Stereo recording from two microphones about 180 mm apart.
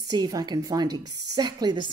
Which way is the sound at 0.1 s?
20° right (ahead or behind).